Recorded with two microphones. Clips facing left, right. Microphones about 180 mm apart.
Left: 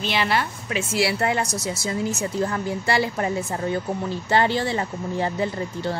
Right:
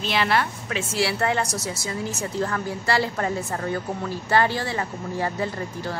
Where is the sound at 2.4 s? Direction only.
20° left (ahead or behind).